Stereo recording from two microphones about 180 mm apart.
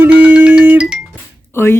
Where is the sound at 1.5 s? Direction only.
15° left (ahead or behind).